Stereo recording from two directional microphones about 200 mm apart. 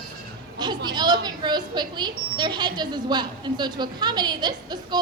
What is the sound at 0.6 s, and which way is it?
Speech, 20° right (ahead or behind).